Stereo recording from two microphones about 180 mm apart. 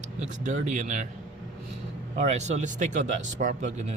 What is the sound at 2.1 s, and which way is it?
Speech, 40° right (ahead or behind).